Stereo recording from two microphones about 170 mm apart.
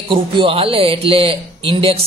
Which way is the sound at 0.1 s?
30° right (ahead or behind).